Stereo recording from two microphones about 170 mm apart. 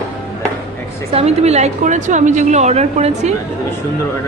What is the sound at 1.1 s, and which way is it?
A woman's voice, 40° right (ahead or behind).